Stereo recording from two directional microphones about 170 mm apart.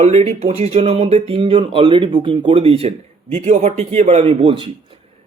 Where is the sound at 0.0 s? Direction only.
35° right (ahead or behind).